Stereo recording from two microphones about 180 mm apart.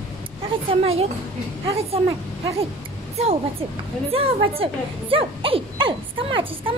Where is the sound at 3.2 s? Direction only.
35° right (ahead or behind).